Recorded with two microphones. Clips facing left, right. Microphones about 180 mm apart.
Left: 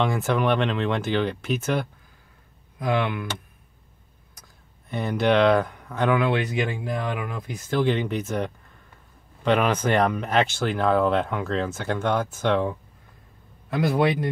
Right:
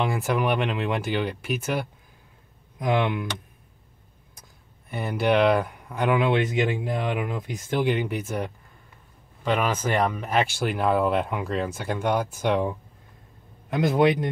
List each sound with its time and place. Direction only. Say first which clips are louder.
0.0 s speech: left 2 dB; 10° right (ahead or behind)
2.8 s a man's voice: right 1 dB; 20° right (ahead or behind)
4.8 s a man's voice: left 2 dB; 10° right (ahead or behind)